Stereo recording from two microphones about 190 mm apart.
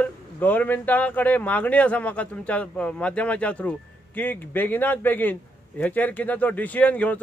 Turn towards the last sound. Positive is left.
turn(degrees=10)  # may be behind; listen again after turning